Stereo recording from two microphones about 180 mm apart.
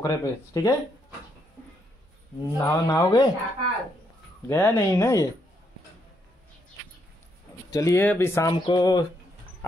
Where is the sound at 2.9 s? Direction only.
15° left (ahead or behind).